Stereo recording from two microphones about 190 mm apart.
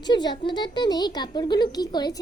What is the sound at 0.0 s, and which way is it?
A woman's voice, 25° left (ahead or behind).